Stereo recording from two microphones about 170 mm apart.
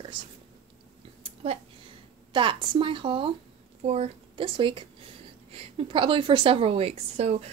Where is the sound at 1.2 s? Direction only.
35° right (ahead or behind).